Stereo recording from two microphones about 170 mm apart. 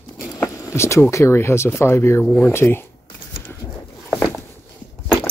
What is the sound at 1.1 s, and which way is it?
Speech, 15° left (ahead or behind).